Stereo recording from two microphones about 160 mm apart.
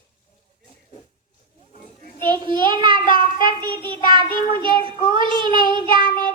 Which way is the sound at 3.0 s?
60° left (ahead or behind).